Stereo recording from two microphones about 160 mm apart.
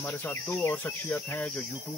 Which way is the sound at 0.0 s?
15° left (ahead or behind).